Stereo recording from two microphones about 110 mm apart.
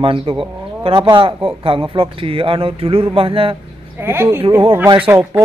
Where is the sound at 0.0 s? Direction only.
55° right (ahead or behind).